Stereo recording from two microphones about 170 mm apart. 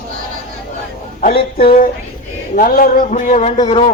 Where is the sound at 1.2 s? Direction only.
65° left (ahead or behind).